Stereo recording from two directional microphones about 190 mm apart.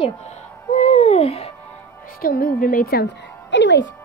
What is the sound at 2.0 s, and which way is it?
A woman's voice, 50° left (ahead or behind).